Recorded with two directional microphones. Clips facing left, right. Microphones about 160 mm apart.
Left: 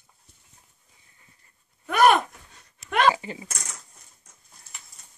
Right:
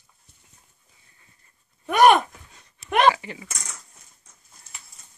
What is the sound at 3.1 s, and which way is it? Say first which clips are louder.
Speech: left 2 dB; 30° left (ahead or behind).